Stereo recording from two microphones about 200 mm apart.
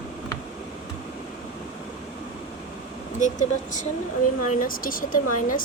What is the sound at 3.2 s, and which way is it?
Speech, 40° left (ahead or behind).